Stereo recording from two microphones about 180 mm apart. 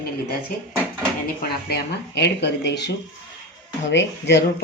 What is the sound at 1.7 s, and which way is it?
Speech, 70° left (ahead or behind).